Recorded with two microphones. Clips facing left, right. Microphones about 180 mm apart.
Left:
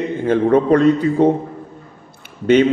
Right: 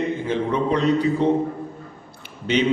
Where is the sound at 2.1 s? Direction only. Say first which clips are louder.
Left 10 dB; 50° left (ahead or behind).